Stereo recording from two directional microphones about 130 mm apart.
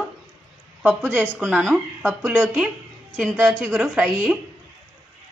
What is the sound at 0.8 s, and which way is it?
Speech, 15° right (ahead or behind).